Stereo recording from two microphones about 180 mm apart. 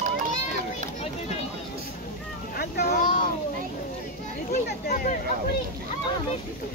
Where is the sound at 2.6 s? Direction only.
55° left (ahead or behind).